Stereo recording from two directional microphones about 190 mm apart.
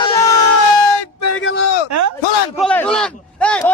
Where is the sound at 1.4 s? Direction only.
75° left (ahead or behind).